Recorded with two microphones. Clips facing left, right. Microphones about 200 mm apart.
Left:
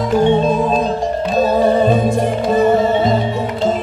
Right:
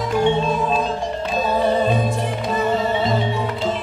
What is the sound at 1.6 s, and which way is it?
Music, 45° left (ahead or behind).